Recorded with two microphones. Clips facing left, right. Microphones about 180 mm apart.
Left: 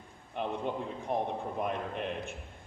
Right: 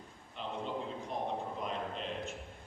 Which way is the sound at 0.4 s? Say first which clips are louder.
Left 7 dB; 60° left (ahead or behind).